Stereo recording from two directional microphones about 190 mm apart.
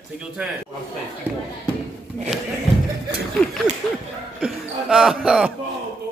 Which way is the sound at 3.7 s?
40° right (ahead or behind).